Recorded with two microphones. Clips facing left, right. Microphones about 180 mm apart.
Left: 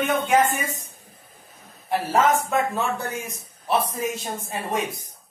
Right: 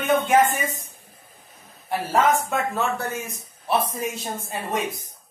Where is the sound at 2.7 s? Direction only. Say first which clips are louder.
Right 1 dB; 15° left (ahead or behind).